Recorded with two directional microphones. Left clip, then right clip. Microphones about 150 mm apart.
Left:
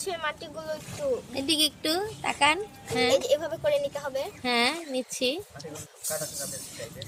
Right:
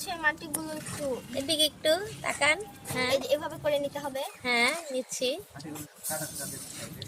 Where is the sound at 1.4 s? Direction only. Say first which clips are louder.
Right 1 dB; 30° left (ahead or behind).